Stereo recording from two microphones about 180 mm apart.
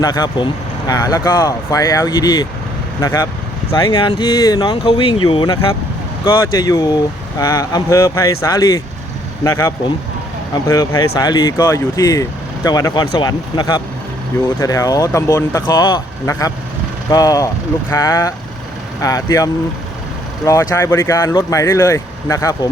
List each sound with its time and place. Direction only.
0.0 s speech: 20° left (ahead or behind)
3.8 s speech: 25° left (ahead or behind)